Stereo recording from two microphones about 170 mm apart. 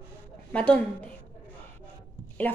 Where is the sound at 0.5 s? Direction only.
5° left (ahead or behind).